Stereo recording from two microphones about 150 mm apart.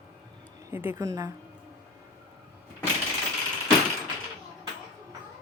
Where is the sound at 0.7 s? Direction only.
15° right (ahead or behind).